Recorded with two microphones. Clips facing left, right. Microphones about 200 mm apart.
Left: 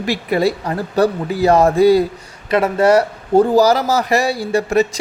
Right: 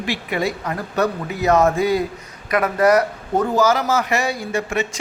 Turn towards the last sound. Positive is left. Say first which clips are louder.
# left 7 dB
turn(degrees=35)  # may be behind; listen again after turning